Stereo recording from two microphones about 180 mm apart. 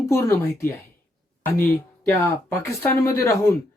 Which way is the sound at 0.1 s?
15° left (ahead or behind).